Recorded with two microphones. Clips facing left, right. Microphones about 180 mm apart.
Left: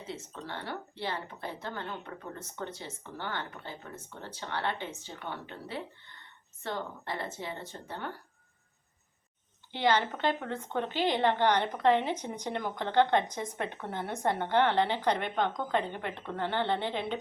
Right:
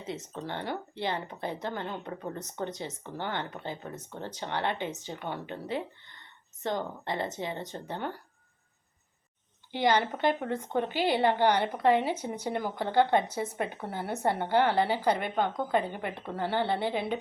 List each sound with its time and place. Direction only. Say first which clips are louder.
0.1 s a woman's voice: right 5 dB; 20° right (ahead or behind)
9.7 s a woman's voice: right 2 dB; 10° right (ahead or behind)